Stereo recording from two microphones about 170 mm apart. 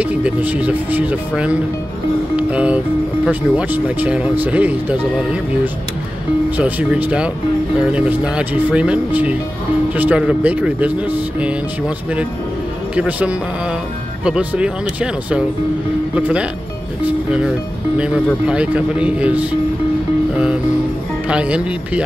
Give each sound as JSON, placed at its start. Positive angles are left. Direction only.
{"t": 0.0, "sound": "speech", "side_deg": -5}
{"t": 6.5, "sound": "speech", "side_deg": -10}
{"t": 12.9, "sound": "speech", "side_deg": -5}
{"t": 21.3, "sound": "speech", "side_deg": -5}